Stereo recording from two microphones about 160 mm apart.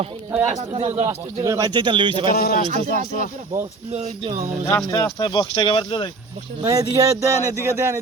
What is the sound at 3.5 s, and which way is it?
Speech, 45° right (ahead or behind).